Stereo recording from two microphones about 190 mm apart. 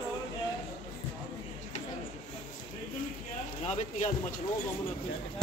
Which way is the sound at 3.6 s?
35° left (ahead or behind).